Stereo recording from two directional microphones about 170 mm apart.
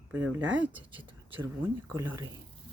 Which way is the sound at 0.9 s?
30° right (ahead or behind).